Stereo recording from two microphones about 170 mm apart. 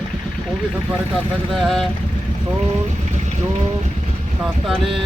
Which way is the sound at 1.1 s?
Centre (ahead or behind).